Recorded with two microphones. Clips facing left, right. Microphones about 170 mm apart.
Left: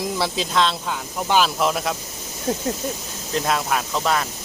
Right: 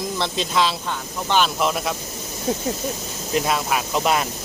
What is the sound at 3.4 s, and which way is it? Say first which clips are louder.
Speech: even; 5° right (ahead or behind).